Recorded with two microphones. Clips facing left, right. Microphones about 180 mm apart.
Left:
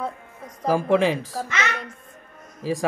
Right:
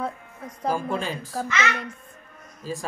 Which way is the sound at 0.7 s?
90° left.